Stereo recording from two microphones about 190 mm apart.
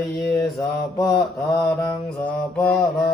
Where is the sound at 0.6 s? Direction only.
15° left (ahead or behind).